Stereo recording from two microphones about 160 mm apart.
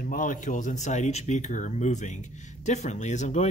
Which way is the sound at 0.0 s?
55° left (ahead or behind).